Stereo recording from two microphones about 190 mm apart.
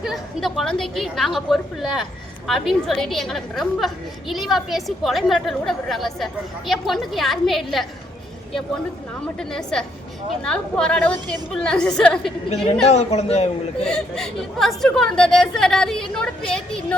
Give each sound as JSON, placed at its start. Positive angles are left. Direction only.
{"t": 0.0, "sound": "a woman's voice", "side_deg": 0}
{"t": 9.4, "sound": "a woman's voice", "side_deg": 5}
{"t": 12.9, "sound": "a man's voice", "side_deg": 35}
{"t": 13.8, "sound": "a woman's voice", "side_deg": 5}